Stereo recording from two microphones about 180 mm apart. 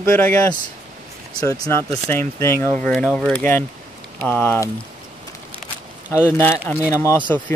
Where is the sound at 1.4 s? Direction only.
20° left (ahead or behind).